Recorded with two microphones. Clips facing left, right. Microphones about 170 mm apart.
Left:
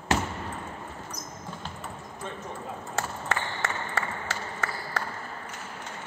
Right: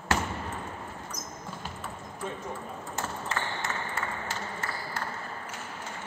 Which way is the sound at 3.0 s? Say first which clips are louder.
Left 2 dB; 80° left.